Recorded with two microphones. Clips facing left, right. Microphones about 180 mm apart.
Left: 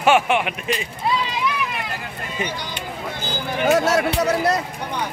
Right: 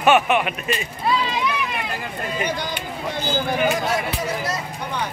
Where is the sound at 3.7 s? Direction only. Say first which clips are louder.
Left 6 dB; 75° left (ahead or behind).